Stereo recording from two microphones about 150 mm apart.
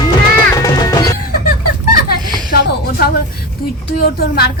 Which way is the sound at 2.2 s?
30° right (ahead or behind).